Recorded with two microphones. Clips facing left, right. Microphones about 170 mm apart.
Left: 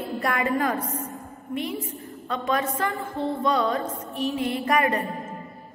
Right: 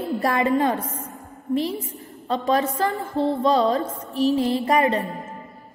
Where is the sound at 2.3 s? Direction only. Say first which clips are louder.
Right 4 dB; 35° right (ahead or behind).